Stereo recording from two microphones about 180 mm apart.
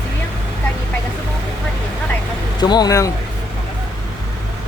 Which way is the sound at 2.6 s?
25° left (ahead or behind).